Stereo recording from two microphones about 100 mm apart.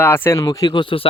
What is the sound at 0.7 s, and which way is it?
Speech, 55° left (ahead or behind).